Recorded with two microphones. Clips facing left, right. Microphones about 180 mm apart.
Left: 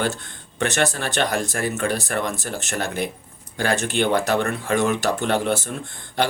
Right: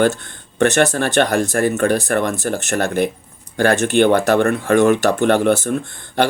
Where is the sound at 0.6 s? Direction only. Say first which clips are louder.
Right 7 dB; 50° right (ahead or behind).